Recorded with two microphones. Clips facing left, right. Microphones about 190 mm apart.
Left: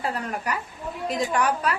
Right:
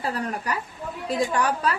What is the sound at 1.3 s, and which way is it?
Speech, 35° right (ahead or behind).